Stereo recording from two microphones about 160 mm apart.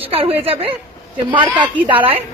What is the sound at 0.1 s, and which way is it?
Speech, 40° right (ahead or behind).